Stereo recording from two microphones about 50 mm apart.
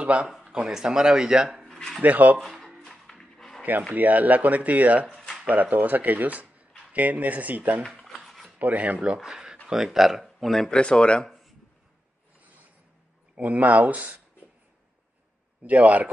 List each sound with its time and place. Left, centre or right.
0.0 s speech: right
0.3 s speech: centre
1.7 s dishes: centre
2.0 s speech: right
2.3 s speech: centre
2.8 s a sound: centre
3.9 s speech: right
7.8 s speech: centre
8.1 s a sound: centre
8.5 s speech: right
9.0 s speech: centre
10.7 s speech: centre
13.4 s speech: right
15.6 s a man's voice: right